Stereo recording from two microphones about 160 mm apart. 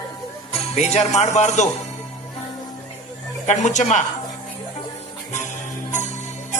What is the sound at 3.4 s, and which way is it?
Jingle bell, 50° left (ahead or behind).